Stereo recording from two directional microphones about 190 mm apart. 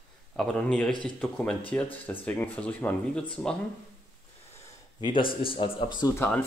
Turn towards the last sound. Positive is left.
turn(degrees=10)  # may be behind; listen again after turning